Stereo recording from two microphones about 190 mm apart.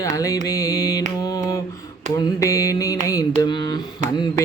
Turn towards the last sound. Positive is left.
turn(degrees=20)  # may be behind; listen again after turning